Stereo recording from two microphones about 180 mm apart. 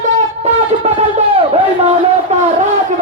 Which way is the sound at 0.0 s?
40° right (ahead or behind).